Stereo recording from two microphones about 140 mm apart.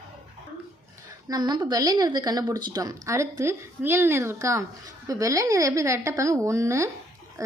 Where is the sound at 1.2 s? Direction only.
30° right (ahead or behind).